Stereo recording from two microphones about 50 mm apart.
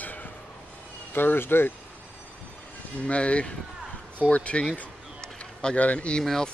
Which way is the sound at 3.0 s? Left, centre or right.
Left.